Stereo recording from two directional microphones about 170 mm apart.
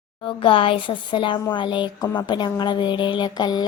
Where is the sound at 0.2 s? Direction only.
30° left (ahead or behind).